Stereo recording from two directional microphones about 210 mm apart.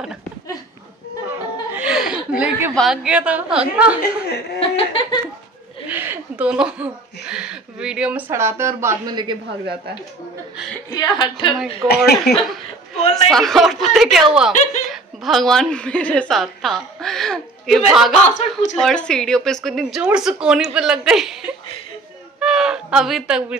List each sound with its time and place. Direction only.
1.2 s chuckle: 10° right (ahead or behind)
4.6 s laughter: 25° left (ahead or behind)
5.9 s speech: 10° right (ahead or behind)
10.9 s laughter: 20° left (ahead or behind)
12.0 s a woman's voice: centre (ahead or behind)
18.3 s speech: 35° left (ahead or behind)
18.8 s a woman's voice: 5° left (ahead or behind)
22.4 s speech: 5° right (ahead or behind)